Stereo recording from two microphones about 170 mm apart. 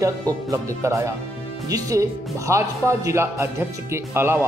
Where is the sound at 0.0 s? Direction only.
20° right (ahead or behind).